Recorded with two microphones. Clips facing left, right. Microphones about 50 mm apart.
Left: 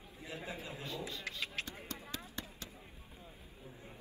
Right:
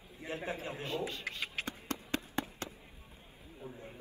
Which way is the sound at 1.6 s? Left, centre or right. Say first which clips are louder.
Right 4 dB; right.